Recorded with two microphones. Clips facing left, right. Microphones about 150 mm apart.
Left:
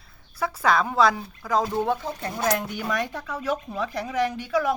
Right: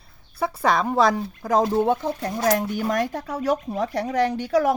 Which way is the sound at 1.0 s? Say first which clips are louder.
Right 2 dB; 45° right (ahead or behind).